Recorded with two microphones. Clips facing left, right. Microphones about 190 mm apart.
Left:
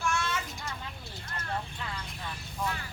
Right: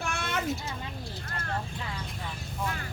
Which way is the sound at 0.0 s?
60° right (ahead or behind).